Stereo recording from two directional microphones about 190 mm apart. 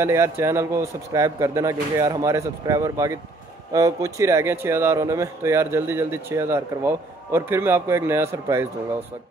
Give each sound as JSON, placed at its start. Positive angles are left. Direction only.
{"t": 0.0, "sound": "speech", "side_deg": -15}